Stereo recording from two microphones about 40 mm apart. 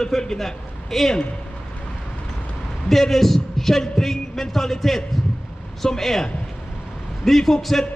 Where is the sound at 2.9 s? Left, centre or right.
Centre.